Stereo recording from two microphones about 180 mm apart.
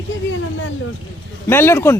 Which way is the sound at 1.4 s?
15° left (ahead or behind).